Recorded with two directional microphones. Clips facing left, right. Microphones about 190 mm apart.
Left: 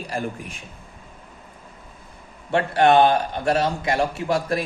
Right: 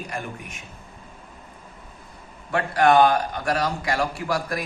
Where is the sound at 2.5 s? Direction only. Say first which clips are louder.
Left 2 dB; 25° left (ahead or behind).